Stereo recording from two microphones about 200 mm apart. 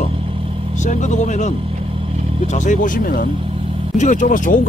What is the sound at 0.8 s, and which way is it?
Speech, 35° left (ahead or behind).